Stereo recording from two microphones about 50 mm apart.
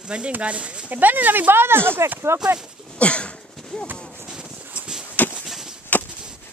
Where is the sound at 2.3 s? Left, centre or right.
Right.